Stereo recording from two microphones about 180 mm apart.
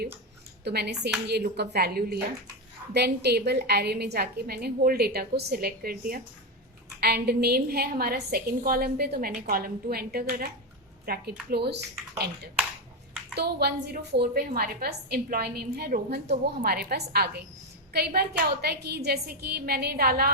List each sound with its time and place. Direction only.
0.6 s a woman's voice: 65° right (ahead or behind)
13.3 s a woman's voice: 65° right (ahead or behind)